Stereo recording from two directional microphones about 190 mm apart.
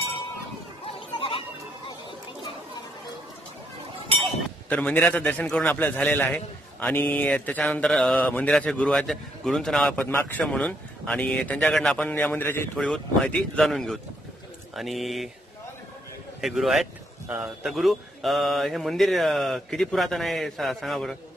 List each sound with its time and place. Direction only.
0.9 s chatter: 30° left (ahead or behind)
4.2 s speech: 5° left (ahead or behind)
16.3 s speech: centre (ahead or behind)